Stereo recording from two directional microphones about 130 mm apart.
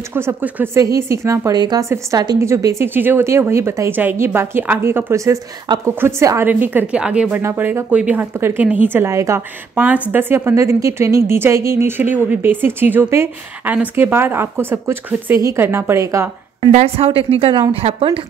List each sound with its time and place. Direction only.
0.1 s a woman's voice: 20° right (ahead or behind)
9.8 s a woman's voice: 10° right (ahead or behind)
16.7 s speech: 50° right (ahead or behind)